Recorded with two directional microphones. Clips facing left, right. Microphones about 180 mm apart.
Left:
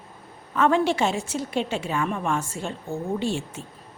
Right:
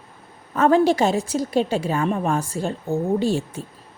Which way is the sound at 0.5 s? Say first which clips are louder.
Right 4 dB; 40° right (ahead or behind).